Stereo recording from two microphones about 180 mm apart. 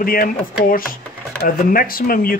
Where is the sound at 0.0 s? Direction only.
55° left (ahead or behind).